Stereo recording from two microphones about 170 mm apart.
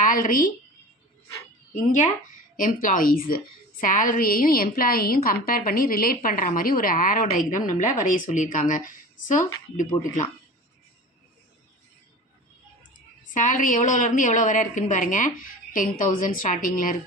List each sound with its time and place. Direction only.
0.0 s a woman's voice: 55° left (ahead or behind)
2.6 s a woman's voice: 55° left (ahead or behind)
13.3 s a woman's voice: 50° left (ahead or behind)